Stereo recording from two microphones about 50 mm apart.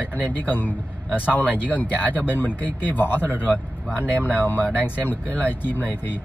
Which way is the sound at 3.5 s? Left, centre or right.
Right.